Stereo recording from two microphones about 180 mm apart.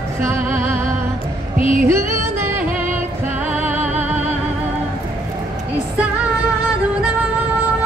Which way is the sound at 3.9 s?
40° right (ahead or behind).